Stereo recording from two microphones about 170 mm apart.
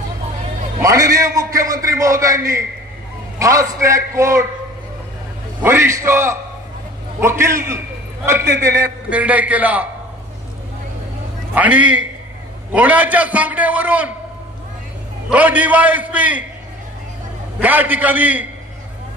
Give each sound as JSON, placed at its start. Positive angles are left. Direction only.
{"t": 0.7, "sound": "a man's voice", "side_deg": -20}
{"t": 5.6, "sound": "a man's voice", "side_deg": -15}
{"t": 11.5, "sound": "a man's voice", "side_deg": -10}
{"t": 15.2, "sound": "a man's voice", "side_deg": -10}
{"t": 17.6, "sound": "a man's voice", "side_deg": -10}